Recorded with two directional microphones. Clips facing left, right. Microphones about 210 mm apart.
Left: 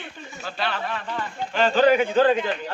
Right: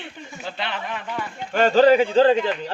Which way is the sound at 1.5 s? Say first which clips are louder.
Right 3 dB; 45° right (ahead or behind).